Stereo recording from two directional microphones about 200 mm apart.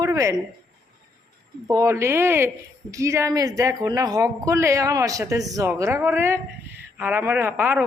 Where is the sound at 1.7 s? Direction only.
15° right (ahead or behind).